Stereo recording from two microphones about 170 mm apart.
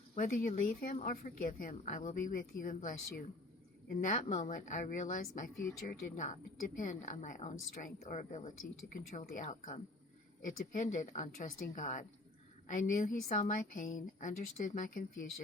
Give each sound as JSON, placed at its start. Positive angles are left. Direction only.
{"t": 0.1, "sound": "a woman's voice", "side_deg": 50}
{"t": 0.9, "sound": "a woman's voice", "side_deg": 40}